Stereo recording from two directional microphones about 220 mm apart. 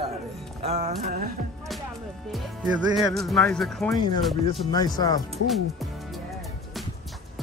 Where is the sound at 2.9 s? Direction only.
Centre (ahead or behind).